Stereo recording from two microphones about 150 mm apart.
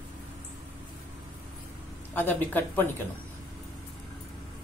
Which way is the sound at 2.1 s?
15° left (ahead or behind).